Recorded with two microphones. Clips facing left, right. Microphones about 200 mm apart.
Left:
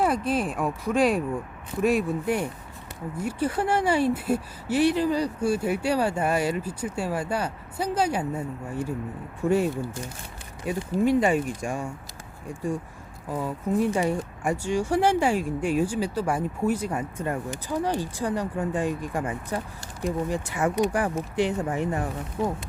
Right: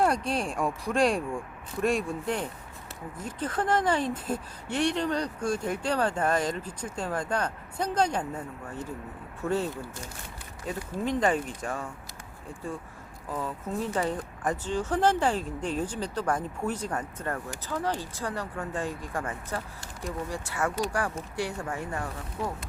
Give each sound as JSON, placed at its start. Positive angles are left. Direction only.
{"t": 0.0, "sound": "speech", "side_deg": 0}
{"t": 13.3, "sound": "speech", "side_deg": 10}